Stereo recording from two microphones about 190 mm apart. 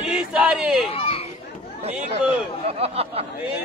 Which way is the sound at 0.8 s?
30° left (ahead or behind).